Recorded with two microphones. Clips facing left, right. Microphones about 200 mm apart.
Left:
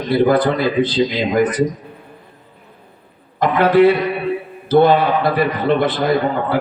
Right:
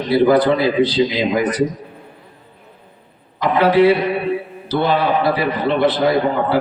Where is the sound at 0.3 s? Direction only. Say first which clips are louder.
Right 1 dB; 50° left (ahead or behind).